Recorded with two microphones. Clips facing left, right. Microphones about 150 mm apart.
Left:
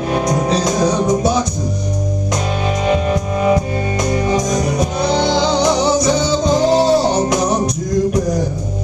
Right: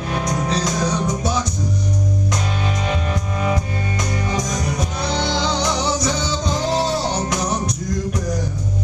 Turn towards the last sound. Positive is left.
turn(degrees=20)  # may be behind; listen again after turning